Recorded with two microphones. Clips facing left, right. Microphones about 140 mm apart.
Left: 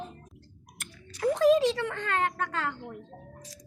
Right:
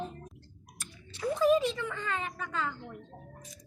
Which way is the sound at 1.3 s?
90° left.